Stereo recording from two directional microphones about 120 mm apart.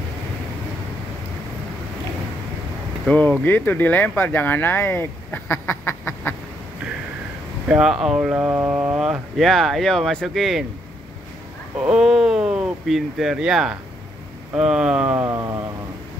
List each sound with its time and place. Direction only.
3.1 s speech: 10° left (ahead or behind)
7.6 s speech: 5° right (ahead or behind)
11.8 s speech: 5° right (ahead or behind)
15.1 s a sound: 20° right (ahead or behind)